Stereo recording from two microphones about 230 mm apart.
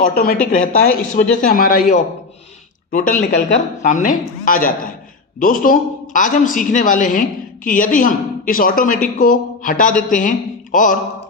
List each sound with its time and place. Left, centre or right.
0.0 s a woman's voice: left